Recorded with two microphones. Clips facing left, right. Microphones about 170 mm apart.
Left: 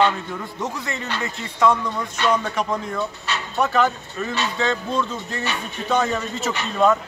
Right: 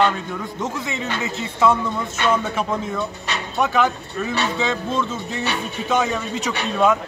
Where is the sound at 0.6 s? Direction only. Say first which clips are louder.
Right 2 dB; centre (ahead or behind).